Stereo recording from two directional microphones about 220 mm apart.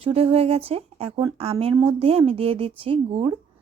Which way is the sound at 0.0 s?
25° right (ahead or behind).